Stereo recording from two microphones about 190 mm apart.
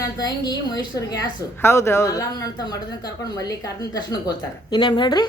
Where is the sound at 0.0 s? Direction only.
20° left (ahead or behind).